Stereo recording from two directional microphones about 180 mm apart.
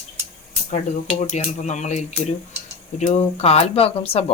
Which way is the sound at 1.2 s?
40° left (ahead or behind).